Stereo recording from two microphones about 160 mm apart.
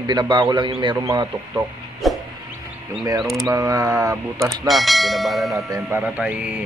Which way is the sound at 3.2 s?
Centre (ahead or behind).